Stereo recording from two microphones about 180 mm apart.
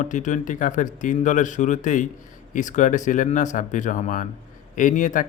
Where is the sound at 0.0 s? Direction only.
45° left (ahead or behind).